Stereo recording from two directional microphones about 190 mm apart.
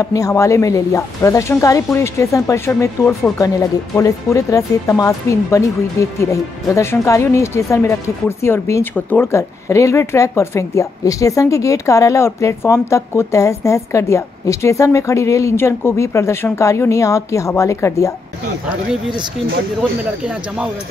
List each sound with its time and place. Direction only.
0.0 s speech: 15° left (ahead or behind)